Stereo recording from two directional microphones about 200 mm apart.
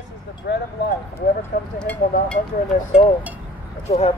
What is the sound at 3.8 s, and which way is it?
Speech, 30° left (ahead or behind).